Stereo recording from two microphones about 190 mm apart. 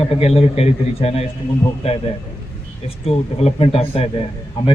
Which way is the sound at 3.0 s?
35° left (ahead or behind).